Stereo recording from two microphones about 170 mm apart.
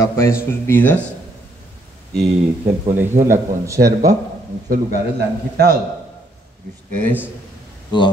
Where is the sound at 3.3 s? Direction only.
15° right (ahead or behind).